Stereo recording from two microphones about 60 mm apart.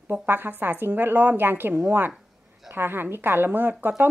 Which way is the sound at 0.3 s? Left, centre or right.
Right.